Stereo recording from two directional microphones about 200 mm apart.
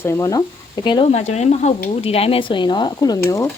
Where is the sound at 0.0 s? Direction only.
15° left (ahead or behind).